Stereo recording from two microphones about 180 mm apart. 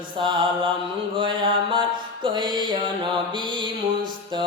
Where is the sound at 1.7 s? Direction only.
25° right (ahead or behind).